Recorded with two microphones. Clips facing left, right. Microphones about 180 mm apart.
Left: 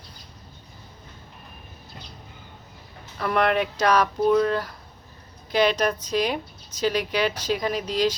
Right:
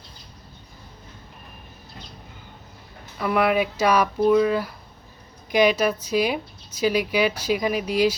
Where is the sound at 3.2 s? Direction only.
5° right (ahead or behind).